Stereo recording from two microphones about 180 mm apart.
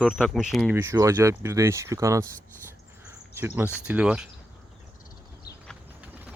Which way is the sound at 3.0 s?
10° right (ahead or behind).